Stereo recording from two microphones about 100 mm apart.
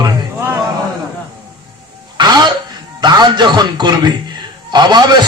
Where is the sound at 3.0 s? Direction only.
45° right (ahead or behind).